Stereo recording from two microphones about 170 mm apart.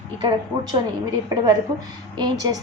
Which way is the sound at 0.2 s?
25° right (ahead or behind).